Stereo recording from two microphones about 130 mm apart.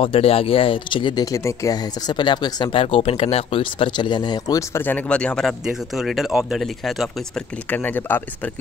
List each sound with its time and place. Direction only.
0.0 s speech: 45° left (ahead or behind); by 7.1 s centre (ahead or behind)
7.7 s speech: 15° left (ahead or behind)